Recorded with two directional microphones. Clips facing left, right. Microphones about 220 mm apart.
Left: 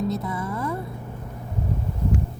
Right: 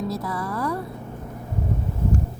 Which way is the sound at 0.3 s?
20° left (ahead or behind).